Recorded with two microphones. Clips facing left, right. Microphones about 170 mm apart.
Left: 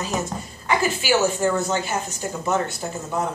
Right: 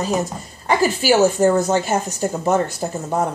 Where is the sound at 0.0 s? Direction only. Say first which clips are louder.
Right 5 dB; 40° right (ahead or behind).